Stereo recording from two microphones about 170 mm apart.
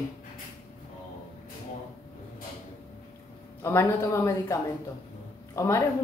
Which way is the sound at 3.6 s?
15° left (ahead or behind).